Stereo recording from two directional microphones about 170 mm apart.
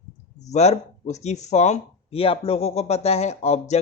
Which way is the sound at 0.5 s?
40° left (ahead or behind).